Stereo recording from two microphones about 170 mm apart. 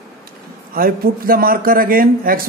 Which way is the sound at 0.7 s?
60° right (ahead or behind).